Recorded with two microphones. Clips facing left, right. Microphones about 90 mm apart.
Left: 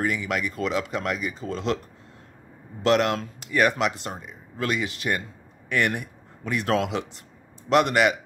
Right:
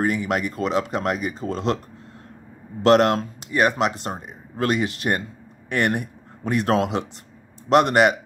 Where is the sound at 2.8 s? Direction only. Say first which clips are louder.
Right 5 dB; 45° right (ahead or behind).